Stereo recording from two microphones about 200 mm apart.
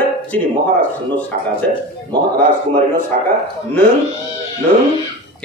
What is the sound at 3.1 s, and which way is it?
Speech, 40° right (ahead or behind).